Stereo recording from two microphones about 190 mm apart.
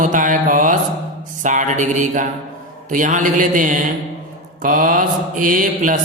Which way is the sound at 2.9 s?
45° right (ahead or behind).